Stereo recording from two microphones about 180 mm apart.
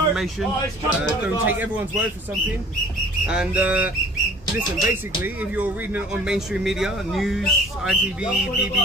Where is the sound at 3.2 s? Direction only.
5° right (ahead or behind).